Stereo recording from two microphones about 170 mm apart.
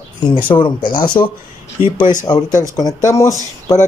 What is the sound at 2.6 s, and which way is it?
Speech, 20° left (ahead or behind).